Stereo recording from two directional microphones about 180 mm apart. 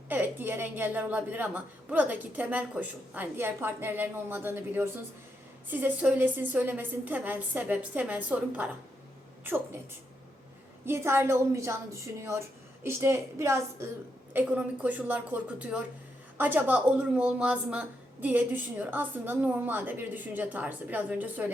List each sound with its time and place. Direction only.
0.1 s a woman's voice: 10° right (ahead or behind)
10.8 s a woman's voice: 15° right (ahead or behind)